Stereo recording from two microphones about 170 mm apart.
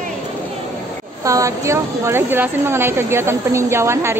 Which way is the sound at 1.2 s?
20° right (ahead or behind).